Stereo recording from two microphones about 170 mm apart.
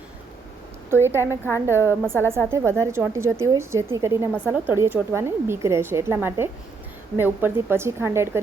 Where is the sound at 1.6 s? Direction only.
15° right (ahead or behind).